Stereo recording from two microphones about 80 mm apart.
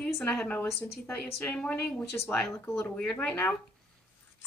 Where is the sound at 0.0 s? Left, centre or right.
Centre.